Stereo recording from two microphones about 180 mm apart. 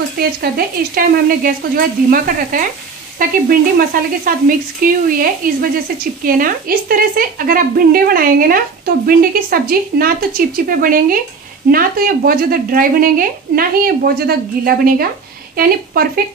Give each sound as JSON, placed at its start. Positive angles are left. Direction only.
{"t": 0.2, "sound": "speech", "side_deg": -55}